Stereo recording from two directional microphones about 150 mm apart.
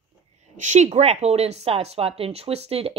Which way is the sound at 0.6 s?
50° right (ahead or behind).